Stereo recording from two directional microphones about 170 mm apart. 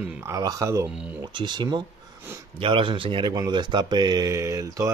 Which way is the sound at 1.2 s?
25° right (ahead or behind).